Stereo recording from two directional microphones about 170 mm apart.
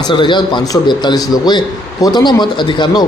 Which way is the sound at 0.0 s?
25° left (ahead or behind).